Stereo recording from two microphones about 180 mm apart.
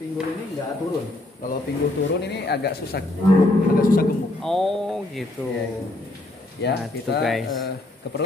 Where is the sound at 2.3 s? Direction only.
65° left (ahead or behind).